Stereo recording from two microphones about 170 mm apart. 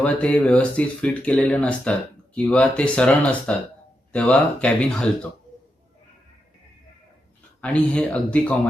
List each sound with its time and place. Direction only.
0.0 s speech: 10° left (ahead or behind)
7.6 s speech: 5° left (ahead or behind)